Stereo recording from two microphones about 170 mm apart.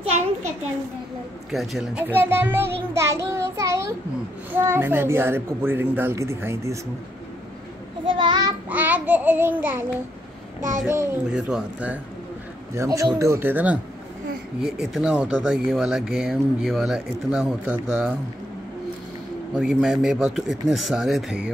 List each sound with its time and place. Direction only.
1.5 s speech: centre (ahead or behind)
2.0 s a woman's voice: 10° right (ahead or behind)
8.0 s child singing: 30° right (ahead or behind)
8.6 s a woman's voice: 10° right (ahead or behind)
11.2 s speech: 5° right (ahead or behind)
12.7 s a woman's voice: 20° right (ahead or behind)
19.5 s speech: 5° right (ahead or behind)